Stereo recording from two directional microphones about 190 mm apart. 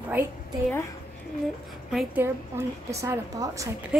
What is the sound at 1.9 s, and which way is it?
A woman's voice, 10° right (ahead or behind).